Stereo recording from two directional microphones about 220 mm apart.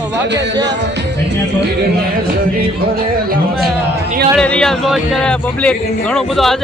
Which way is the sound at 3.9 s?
45° right (ahead or behind).